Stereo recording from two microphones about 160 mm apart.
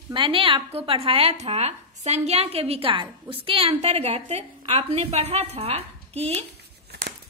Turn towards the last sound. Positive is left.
turn(degrees=-90)